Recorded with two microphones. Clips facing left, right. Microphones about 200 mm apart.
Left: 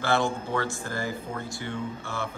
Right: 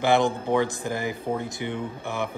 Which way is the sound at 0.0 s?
15° right (ahead or behind).